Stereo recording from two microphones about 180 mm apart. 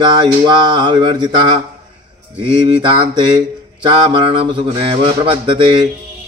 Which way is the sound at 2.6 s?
25° right (ahead or behind).